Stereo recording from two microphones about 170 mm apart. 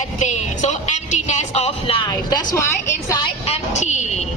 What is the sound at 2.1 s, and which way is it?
A woman's voice, 20° left (ahead or behind).